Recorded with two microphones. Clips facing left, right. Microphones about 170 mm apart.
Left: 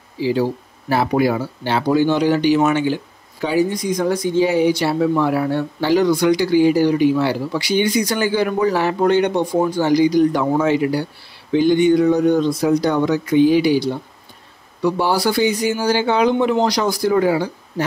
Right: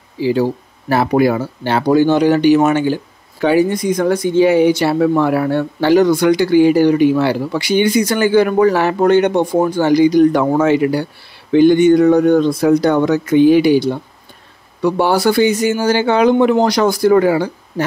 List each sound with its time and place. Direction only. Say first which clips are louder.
0.2 s speech: right 3 dB; 55° right (ahead or behind)
2.6 s speech: right 3 dB; 45° right (ahead or behind)
3.3 s speech: right 5 dB; 65° right (ahead or behind)